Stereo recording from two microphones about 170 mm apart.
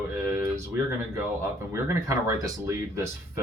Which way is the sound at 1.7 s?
20° right (ahead or behind).